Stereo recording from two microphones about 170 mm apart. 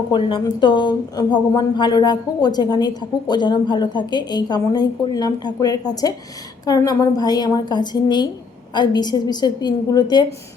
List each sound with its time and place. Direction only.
0.1 s speech: 25° left (ahead or behind)